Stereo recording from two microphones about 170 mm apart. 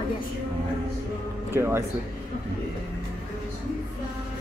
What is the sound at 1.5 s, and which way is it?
Speech, 15° right (ahead or behind).